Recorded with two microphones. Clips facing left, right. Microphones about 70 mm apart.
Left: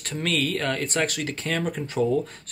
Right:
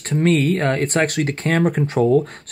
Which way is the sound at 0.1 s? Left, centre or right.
Right.